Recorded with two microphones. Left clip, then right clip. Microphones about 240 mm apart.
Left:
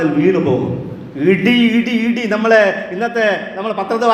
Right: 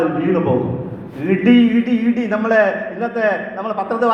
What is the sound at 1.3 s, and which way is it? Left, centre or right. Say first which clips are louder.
A man's voice: left 1 dB; left.